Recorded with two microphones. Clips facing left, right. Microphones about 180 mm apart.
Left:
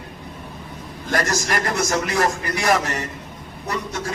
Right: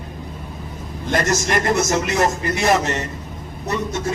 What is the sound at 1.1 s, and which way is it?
A man's voice, 20° right (ahead or behind).